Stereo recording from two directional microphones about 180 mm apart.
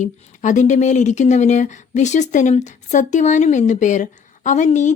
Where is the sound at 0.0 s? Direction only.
45° left (ahead or behind).